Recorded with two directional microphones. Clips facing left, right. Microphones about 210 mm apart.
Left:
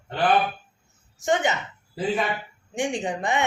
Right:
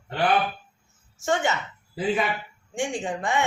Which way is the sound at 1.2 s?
20° left (ahead or behind).